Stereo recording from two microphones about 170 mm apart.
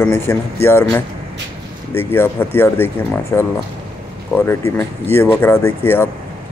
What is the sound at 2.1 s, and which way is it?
Speech, 15° left (ahead or behind).